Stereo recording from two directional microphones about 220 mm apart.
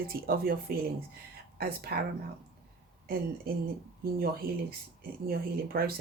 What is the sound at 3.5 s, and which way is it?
Speech, 45° right (ahead or behind).